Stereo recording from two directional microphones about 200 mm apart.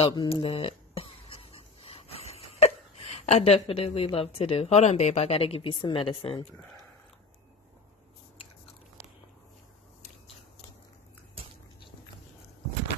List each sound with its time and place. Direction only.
0.0 s speech: 25° left (ahead or behind)